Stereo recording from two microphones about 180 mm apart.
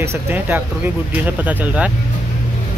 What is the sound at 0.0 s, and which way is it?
Speech, 10° right (ahead or behind).